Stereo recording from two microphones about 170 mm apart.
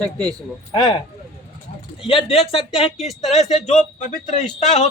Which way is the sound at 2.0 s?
30° left (ahead or behind).